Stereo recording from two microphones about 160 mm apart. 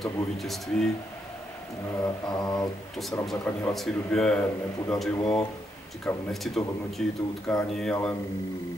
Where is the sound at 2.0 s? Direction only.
25° left (ahead or behind).